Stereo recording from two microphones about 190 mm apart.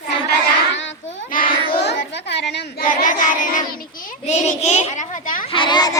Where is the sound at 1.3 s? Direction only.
45° left (ahead or behind).